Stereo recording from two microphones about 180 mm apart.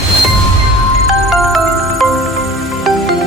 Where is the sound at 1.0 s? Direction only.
Centre (ahead or behind).